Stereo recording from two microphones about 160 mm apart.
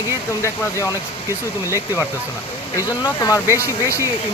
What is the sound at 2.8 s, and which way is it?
Speech, 20° left (ahead or behind).